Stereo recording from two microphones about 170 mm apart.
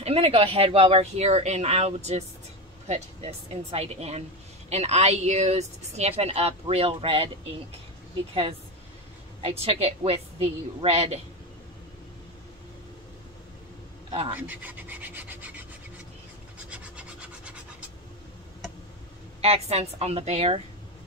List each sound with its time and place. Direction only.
0.0 s speech: 35° right (ahead or behind)
9.4 s speech: 35° right (ahead or behind)
14.3 s rub: 10° right (ahead or behind)
16.7 s rub: 5° right (ahead or behind)
19.4 s speech: 35° right (ahead or behind)